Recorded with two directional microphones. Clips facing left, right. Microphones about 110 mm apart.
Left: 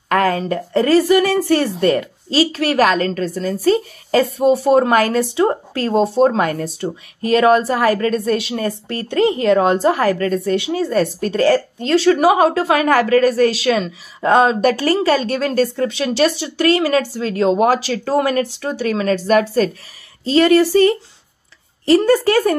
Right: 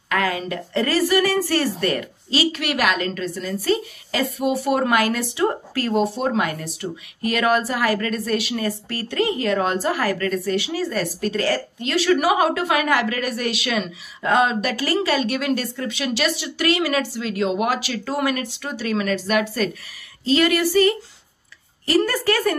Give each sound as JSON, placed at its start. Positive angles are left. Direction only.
{"t": 0.1, "sound": "a woman's voice", "side_deg": 40}